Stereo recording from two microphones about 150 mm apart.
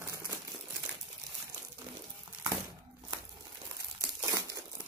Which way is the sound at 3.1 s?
25° right (ahead or behind).